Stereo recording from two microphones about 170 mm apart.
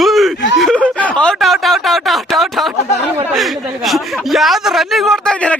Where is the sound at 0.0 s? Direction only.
Centre (ahead or behind).